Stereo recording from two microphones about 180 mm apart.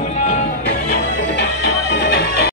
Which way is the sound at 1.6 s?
65° left (ahead or behind).